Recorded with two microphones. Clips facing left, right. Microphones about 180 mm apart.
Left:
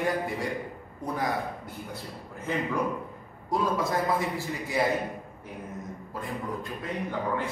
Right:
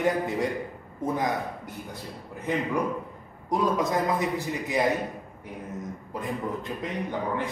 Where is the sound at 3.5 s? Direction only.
20° right (ahead or behind).